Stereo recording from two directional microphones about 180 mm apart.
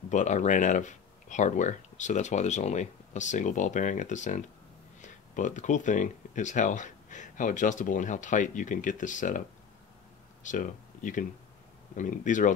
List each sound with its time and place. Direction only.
0.1 s speech: 40° left (ahead or behind)
10.4 s speech: 45° left (ahead or behind)